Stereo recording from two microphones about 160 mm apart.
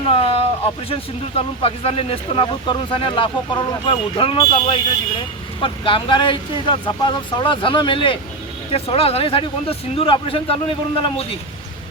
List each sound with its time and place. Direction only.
0.1 s speech: 35° left (ahead or behind)